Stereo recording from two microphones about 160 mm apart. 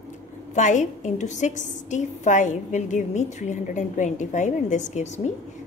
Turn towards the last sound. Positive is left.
turn(degrees=45)  # may be behind; listen again after turning